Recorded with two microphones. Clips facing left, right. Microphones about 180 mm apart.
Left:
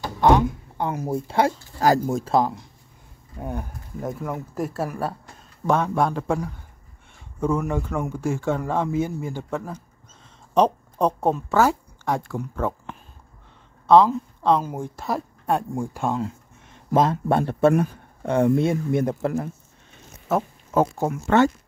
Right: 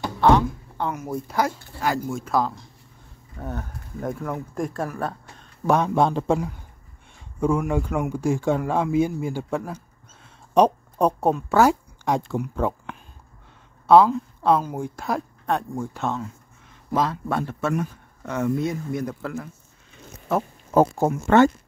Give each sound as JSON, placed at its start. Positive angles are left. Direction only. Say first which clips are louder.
{"t": 0.2, "sound": "speech", "louder": "even", "side_deg": 15}
{"t": 0.9, "sound": "speech", "louder": "left 5 dB", "side_deg": 30}
{"t": 2.3, "sound": "speech", "louder": "left 1 dB", "side_deg": 20}
{"t": 5.7, "sound": "speech", "louder": "right 2 dB", "side_deg": -20}
{"t": 7.3, "sound": "speech", "louder": "right 1 dB", "side_deg": -10}
{"t": 13.8, "sound": "speech", "louder": "even", "side_deg": -5}
{"t": 17.3, "sound": "speech", "louder": "left 7 dB", "side_deg": 30}
{"t": 20.3, "sound": "speech", "louder": "left 1 dB", "side_deg": 0}
{"t": 20.7, "sound": "speech", "louder": "right 3 dB", "side_deg": -35}
{"t": 21.2, "sound": "speech", "louder": "right 2 dB", "side_deg": -55}